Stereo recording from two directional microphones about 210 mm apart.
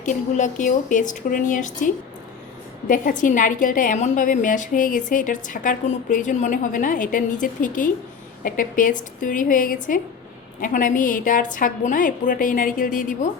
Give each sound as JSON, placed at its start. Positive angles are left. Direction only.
{"t": 0.0, "sound": "a woman's voice", "side_deg": 35}